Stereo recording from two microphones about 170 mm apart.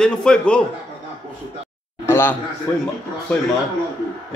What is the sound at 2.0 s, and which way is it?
Speech, 15° left (ahead or behind).